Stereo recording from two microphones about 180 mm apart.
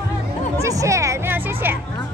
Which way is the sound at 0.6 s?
15° right (ahead or behind).